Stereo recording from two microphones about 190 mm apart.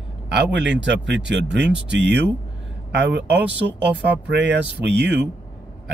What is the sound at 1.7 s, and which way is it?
Speech, 70° right (ahead or behind).